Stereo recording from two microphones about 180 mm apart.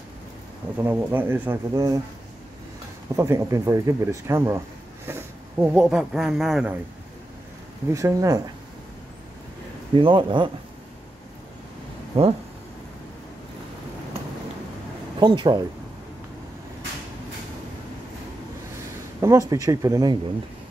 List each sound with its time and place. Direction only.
0.7 s speech: 10° right (ahead or behind)
3.2 s speech: 15° right (ahead or behind); by 6.7 s centre (ahead or behind)
7.9 s speech: 20° right (ahead or behind)
9.9 s speech: 25° right (ahead or behind)
12.1 s speech: 30° right (ahead or behind)
15.1 s speech: 25° right (ahead or behind)
19.2 s speech: 20° right (ahead or behind)